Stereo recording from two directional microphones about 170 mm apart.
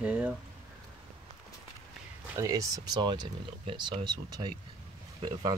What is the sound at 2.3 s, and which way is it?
Speech, 20° right (ahead or behind).